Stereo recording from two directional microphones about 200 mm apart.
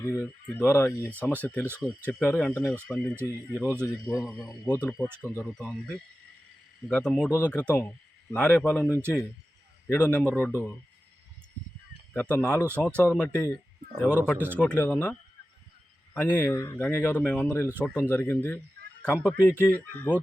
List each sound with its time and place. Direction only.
0.0 s speech: 10° left (ahead or behind)
1.6 s speech: 10° right (ahead or behind)
2.0 s speech: 5° left (ahead or behind)
4.2 s speech: centre (ahead or behind)
5.0 s speech: 10° right (ahead or behind)
5.3 s speech: 5° left (ahead or behind)
8.9 s speech: 10° right (ahead or behind)
9.9 s speech: 5° left (ahead or behind)
12.1 s speech: 5° left (ahead or behind)
14.3 s speech: 10° right (ahead or behind)
14.6 s speech: 10° left (ahead or behind)
16.4 s speech: 10° left (ahead or behind)
17.7 s speech: 10° right (ahead or behind)
17.9 s speech: 10° left (ahead or behind)